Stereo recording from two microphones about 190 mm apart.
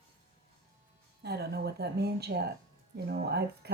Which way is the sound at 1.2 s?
60° right (ahead or behind).